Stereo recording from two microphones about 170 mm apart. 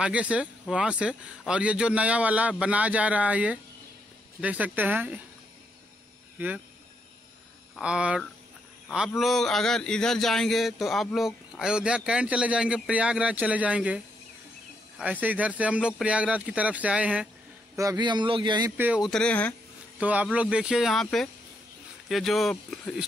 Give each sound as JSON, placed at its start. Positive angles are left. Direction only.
{"t": 0.0, "sound": "speech", "side_deg": -5}
{"t": 7.7, "sound": "a man's voice", "side_deg": -5}
{"t": 17.7, "sound": "speech", "side_deg": -25}
{"t": 18.8, "sound": "speech", "side_deg": -10}
{"t": 19.0, "sound": "a man's voice", "side_deg": 5}
{"t": 20.0, "sound": "a man's voice", "side_deg": -10}